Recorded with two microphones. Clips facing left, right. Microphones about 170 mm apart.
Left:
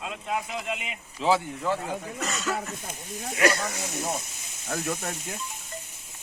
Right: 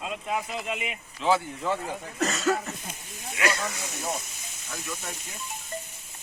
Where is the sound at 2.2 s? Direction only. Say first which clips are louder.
Right 8 dB; 40° right (ahead or behind).